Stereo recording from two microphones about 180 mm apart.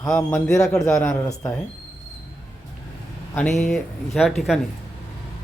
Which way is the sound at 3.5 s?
Centre (ahead or behind).